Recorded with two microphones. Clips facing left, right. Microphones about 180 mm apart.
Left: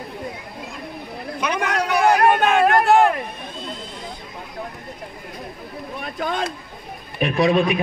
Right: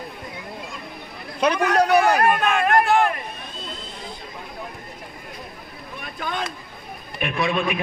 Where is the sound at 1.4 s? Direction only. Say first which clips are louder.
Right 5 dB; 35° right (ahead or behind).